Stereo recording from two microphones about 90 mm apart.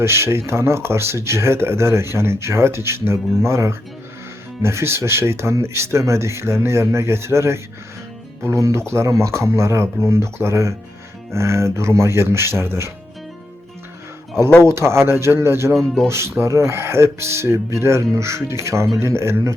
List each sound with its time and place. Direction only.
0.0 s speech: 30° right (ahead or behind)
14.6 s speech: 30° right (ahead or behind)
15.7 s speech: centre (ahead or behind)
16.0 s speech: 30° right (ahead or behind)